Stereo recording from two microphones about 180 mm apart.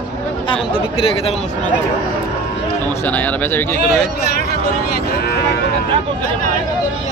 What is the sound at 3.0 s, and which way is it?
Speech, 10° left (ahead or behind).